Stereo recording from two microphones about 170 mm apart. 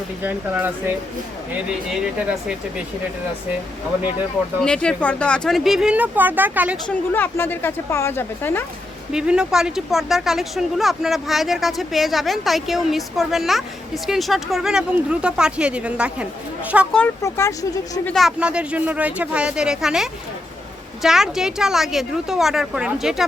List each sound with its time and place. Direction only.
0.2 s speech: 10° right (ahead or behind)
4.6 s speech: 5° left (ahead or behind); by 6.7 s 10° right (ahead or behind)
6.8 s a woman's voice: 10° left (ahead or behind)
9.1 s speech: 5° right (ahead or behind)
17.2 s a woman's voice: 15° left (ahead or behind)
18.0 s speech: centre (ahead or behind)